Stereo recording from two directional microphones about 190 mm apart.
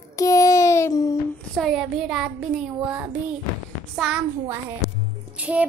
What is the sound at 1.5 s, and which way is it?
A woman's voice, centre (ahead or behind).